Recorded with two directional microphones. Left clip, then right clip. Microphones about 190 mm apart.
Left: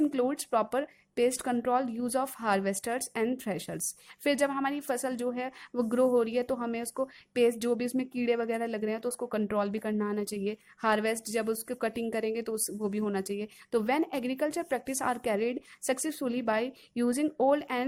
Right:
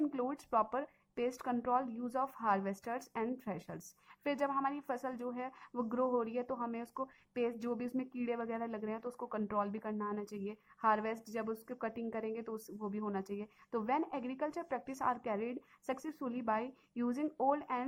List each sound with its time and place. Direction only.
0.0 s a woman's voice: 30° left (ahead or behind)